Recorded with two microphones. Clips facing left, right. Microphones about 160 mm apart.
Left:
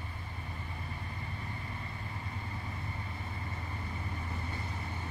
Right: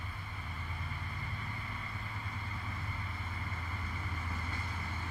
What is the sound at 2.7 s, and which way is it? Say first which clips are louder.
Vehicle: left 2 dB; 30° left (ahead or behind).